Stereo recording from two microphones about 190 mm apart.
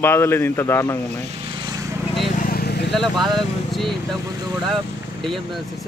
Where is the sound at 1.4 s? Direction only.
25° right (ahead or behind).